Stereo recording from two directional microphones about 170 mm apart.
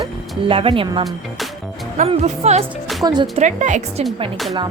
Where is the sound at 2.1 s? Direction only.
40° right (ahead or behind).